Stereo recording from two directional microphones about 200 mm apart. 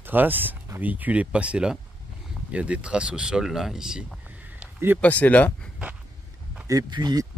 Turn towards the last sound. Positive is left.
turn(degrees=-20)  # may be behind; listen again after turning